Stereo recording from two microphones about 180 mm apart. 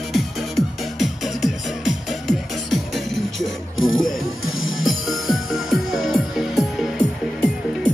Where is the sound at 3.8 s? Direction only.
90° left.